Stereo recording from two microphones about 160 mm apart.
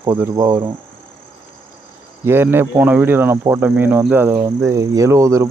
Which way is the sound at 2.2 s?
15° right (ahead or behind).